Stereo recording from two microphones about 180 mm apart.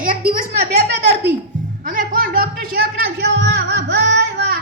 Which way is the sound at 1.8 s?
50° right (ahead or behind).